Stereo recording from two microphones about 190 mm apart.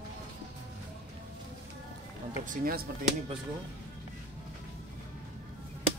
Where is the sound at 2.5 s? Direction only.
50° right (ahead or behind).